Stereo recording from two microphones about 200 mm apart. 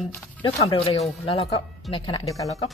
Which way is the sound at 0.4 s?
25° left (ahead or behind).